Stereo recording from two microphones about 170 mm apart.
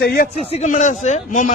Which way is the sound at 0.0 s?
60° left (ahead or behind).